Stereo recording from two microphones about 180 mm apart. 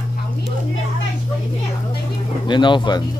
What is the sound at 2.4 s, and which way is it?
Speech, 25° left (ahead or behind).